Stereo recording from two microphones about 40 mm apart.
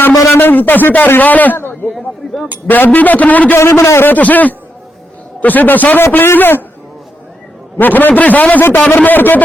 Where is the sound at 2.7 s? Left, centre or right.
Left.